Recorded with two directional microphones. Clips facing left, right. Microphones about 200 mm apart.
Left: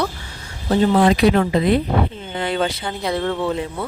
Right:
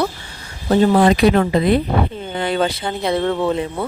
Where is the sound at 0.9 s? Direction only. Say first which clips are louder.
Right 2 dB; 45° right (ahead or behind).